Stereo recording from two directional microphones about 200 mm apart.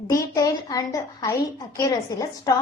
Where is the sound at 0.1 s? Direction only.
15° left (ahead or behind).